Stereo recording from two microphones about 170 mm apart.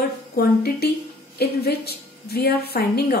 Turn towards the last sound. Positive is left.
turn(degrees=70)  # may be behind; listen again after turning